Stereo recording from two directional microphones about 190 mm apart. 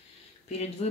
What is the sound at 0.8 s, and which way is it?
Speech, 35° left (ahead or behind).